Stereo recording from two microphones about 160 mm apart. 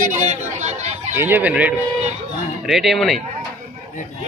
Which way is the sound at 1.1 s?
15° right (ahead or behind).